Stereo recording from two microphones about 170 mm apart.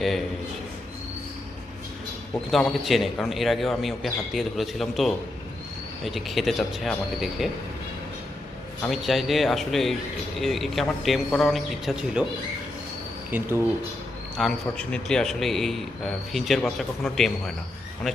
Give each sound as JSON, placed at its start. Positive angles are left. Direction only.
{"t": 2.5, "sound": "a man's voice", "side_deg": 0}
{"t": 8.9, "sound": "a man's voice", "side_deg": 0}
{"t": 13.3, "sound": "speech", "side_deg": -10}
{"t": 14.3, "sound": "a man's voice", "side_deg": 5}